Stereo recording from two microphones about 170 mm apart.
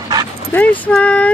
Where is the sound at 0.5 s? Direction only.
10° left (ahead or behind).